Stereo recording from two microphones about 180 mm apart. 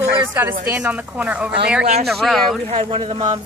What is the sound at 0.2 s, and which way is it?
A woman's voice, 10° right (ahead or behind).